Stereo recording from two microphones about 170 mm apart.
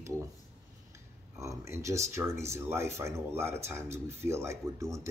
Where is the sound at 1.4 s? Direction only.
15° right (ahead or behind).